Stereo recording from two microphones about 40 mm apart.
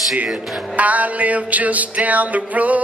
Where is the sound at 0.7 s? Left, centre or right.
Right.